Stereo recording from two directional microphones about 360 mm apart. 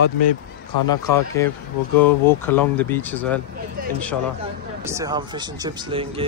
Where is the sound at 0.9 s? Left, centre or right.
Centre.